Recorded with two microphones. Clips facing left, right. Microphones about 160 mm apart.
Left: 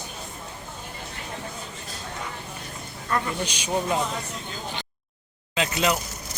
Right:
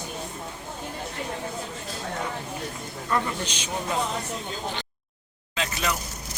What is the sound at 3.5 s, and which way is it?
Speech, 10° left (ahead or behind).